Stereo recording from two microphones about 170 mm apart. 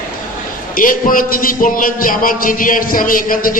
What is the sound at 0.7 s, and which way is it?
A man's voice, 55° left (ahead or behind).